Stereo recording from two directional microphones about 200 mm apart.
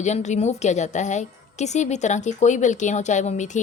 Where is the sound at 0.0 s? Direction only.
35° left (ahead or behind).